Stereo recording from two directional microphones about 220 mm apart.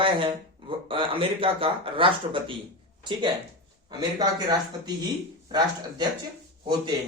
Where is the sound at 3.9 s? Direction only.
20° right (ahead or behind).